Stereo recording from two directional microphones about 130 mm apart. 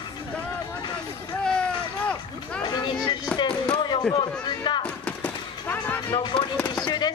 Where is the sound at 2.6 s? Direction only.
35° left (ahead or behind).